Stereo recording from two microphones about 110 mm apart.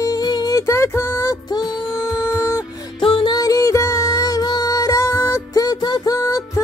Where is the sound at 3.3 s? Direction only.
30° left (ahead or behind).